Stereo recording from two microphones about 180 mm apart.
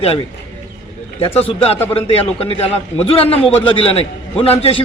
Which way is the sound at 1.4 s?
35° left (ahead or behind).